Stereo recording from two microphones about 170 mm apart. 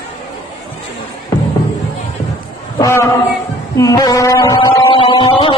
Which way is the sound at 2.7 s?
15° left (ahead or behind).